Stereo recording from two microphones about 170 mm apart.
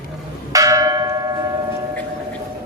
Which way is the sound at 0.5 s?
20° right (ahead or behind).